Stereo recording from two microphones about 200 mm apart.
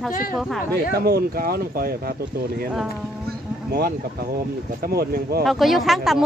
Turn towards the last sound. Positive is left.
turn(degrees=0)  # may be behind; listen again after turning